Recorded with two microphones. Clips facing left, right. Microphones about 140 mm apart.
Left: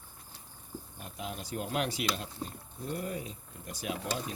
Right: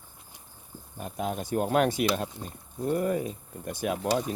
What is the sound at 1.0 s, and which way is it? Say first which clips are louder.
Speech: right 10 dB; 50° right (ahead or behind).